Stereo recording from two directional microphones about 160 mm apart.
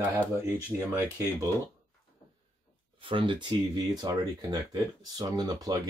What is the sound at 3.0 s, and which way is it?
Speech, 30° right (ahead or behind).